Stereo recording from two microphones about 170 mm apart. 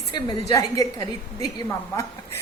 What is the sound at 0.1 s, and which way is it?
A woman's voice, 25° left (ahead or behind).